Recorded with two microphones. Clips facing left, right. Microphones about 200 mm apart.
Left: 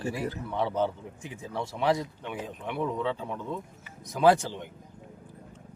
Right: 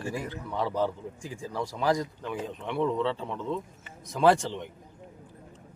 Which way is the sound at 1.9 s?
5° left (ahead or behind).